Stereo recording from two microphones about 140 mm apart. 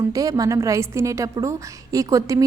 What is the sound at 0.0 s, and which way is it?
A woman's voice, 25° right (ahead or behind).